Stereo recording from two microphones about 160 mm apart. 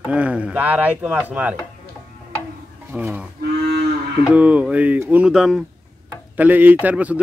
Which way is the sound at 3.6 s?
90° right.